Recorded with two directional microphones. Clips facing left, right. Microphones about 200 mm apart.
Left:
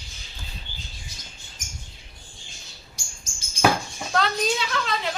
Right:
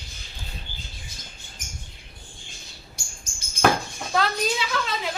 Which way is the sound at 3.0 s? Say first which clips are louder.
Right 1 dB; 55° right (ahead or behind).